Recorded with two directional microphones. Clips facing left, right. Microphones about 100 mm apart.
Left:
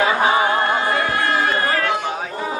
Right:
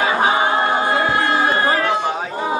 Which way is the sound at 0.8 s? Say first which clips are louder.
Right 2 dB; 20° right (ahead or behind).